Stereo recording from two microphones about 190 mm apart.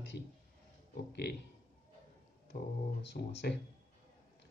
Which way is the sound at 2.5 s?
45° left (ahead or behind).